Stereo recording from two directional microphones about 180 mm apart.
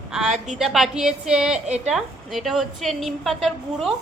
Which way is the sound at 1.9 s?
Centre (ahead or behind).